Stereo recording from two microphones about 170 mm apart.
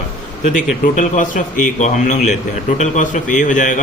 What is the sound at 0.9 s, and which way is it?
Speech, 45° left (ahead or behind).